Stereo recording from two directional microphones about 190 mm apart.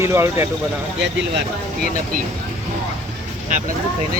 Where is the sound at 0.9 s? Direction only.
60° right (ahead or behind).